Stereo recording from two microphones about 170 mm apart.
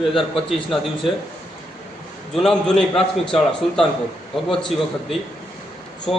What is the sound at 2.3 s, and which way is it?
Speech, 5° left (ahead or behind).